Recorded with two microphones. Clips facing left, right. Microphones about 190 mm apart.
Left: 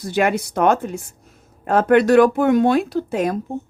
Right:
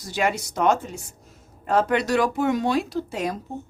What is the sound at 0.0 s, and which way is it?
A woman's voice, 55° left (ahead or behind).